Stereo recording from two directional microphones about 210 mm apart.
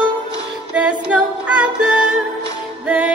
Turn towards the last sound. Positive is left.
turn(degrees=-5)  # may be behind; listen again after turning